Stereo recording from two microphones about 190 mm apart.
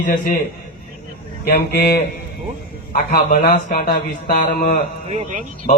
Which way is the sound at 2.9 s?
45° left (ahead or behind).